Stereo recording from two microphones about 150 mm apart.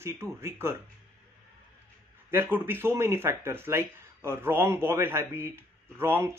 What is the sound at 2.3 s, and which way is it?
Speech, 15° right (ahead or behind).